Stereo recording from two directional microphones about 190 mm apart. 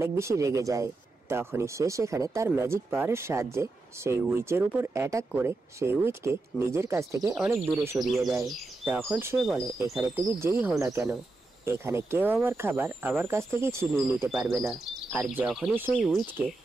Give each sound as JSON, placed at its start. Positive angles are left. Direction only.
{"t": 0.0, "sound": "speech", "side_deg": -15}
{"t": 14.3, "sound": "speech", "side_deg": -5}